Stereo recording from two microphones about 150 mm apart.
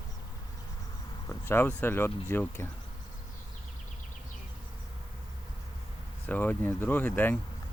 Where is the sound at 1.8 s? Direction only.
15° left (ahead or behind).